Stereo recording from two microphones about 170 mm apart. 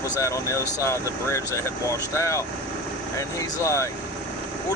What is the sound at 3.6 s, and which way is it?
Speech, 15° left (ahead or behind).